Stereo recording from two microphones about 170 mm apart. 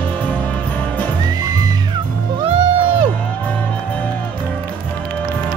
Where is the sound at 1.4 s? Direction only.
20° right (ahead or behind).